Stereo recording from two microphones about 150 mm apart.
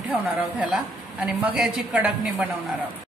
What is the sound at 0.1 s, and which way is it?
A woman's voice, 5° right (ahead or behind).